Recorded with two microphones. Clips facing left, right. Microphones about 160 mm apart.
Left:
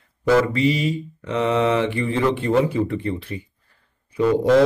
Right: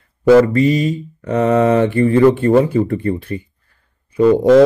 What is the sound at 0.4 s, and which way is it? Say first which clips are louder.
Mantra: right 7 dB; 45° right (ahead or behind).